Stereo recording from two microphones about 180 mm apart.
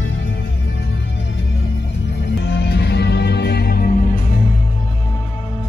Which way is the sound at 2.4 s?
70° left (ahead or behind).